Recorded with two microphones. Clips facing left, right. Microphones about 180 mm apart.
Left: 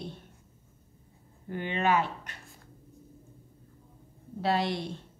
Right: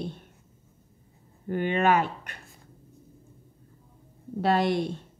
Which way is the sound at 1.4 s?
55° right (ahead or behind).